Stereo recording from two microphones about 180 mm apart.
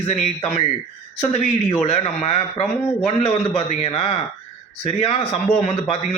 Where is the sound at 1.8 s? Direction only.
35° left (ahead or behind).